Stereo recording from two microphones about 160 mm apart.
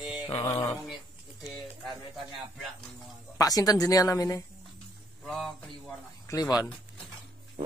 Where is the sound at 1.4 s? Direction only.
Centre (ahead or behind).